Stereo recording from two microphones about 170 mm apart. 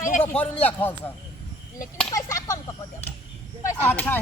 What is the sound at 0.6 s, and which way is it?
Speech, 10° left (ahead or behind).